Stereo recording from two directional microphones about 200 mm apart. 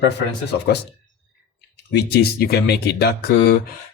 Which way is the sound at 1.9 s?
55° left (ahead or behind).